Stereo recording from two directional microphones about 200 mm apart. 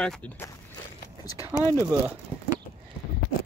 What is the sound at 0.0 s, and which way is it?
Speech, 5° left (ahead or behind).